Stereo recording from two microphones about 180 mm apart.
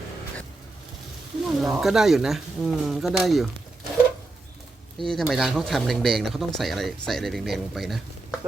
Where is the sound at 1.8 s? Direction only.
Centre (ahead or behind).